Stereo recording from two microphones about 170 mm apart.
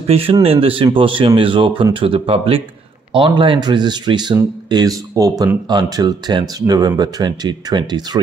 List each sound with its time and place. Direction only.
0.0 s speech: 35° right (ahead or behind)